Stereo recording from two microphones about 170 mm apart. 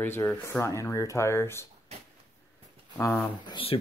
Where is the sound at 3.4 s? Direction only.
30° left (ahead or behind).